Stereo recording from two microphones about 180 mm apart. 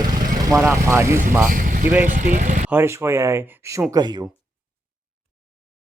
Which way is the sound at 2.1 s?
45° right (ahead or behind).